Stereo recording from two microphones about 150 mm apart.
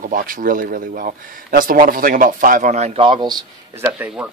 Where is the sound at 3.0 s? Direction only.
30° right (ahead or behind).